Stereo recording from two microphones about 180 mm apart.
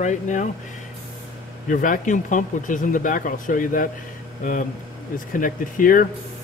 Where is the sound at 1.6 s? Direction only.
50° left (ahead or behind).